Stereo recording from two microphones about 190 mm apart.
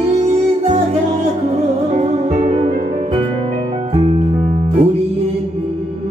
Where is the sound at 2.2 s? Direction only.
30° right (ahead or behind).